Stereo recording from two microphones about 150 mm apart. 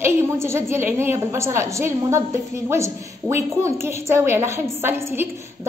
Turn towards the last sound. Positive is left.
turn(degrees=-15)  # may be behind; listen again after turning